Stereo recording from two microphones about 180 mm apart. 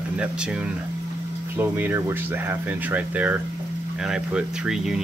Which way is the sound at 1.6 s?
10° right (ahead or behind).